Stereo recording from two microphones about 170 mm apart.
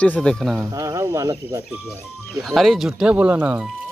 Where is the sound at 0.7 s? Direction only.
20° right (ahead or behind).